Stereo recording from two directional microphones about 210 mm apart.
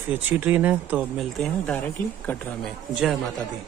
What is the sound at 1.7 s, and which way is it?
Speech, 10° left (ahead or behind).